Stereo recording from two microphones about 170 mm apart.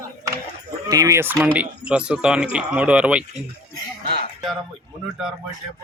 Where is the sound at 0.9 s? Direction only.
20° right (ahead or behind).